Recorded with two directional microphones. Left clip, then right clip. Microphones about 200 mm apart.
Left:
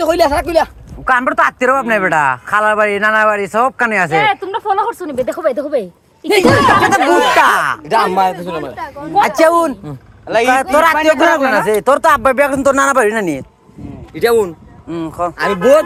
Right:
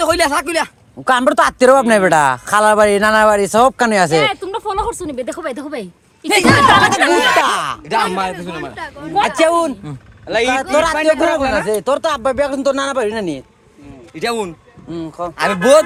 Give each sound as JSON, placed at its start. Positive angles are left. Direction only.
{"t": 0.0, "sound": "a sound", "side_deg": -60}
{"t": 0.3, "sound": "speech", "side_deg": -40}
{"t": 4.2, "sound": "a woman's voice", "side_deg": -15}
{"t": 6.9, "sound": "speech", "side_deg": -10}
{"t": 7.9, "sound": "a man's voice", "side_deg": 10}
{"t": 9.4, "sound": "a man's voice", "side_deg": 0}
{"t": 14.2, "sound": "speech", "side_deg": -20}
{"t": 14.8, "sound": "a man's voice", "side_deg": 15}